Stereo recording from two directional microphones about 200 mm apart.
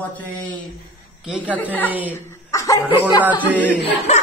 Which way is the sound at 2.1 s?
15° left (ahead or behind).